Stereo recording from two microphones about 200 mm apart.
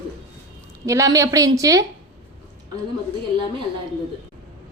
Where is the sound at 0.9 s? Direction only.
15° right (ahead or behind).